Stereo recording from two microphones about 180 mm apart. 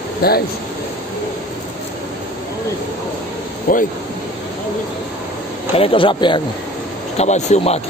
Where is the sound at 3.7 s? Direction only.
50° left (ahead or behind).